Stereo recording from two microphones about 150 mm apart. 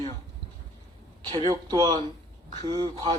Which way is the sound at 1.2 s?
30° right (ahead or behind).